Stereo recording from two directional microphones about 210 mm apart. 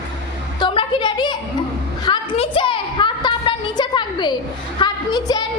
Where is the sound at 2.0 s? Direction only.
25° left (ahead or behind).